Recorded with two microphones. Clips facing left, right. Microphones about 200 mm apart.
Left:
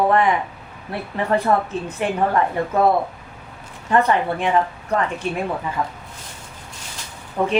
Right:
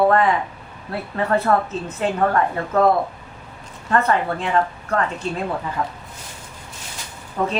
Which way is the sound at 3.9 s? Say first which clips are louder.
Left 1 dB; 15° left (ahead or behind).